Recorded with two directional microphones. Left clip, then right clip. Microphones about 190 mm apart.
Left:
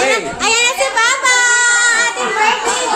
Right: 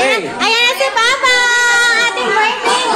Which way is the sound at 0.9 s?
20° right (ahead or behind).